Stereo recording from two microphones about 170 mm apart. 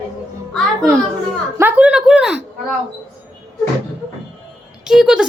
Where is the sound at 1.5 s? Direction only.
10° right (ahead or behind).